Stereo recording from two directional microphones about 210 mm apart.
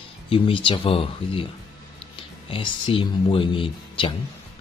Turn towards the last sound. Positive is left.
turn(degrees=25)  # may be behind; listen again after turning